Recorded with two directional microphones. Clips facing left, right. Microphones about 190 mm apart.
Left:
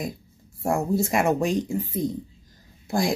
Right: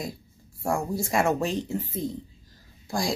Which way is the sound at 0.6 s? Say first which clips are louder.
Left 4 dB; 20° left (ahead or behind).